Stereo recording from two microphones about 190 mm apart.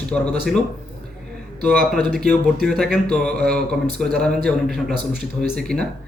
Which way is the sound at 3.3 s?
55° right (ahead or behind).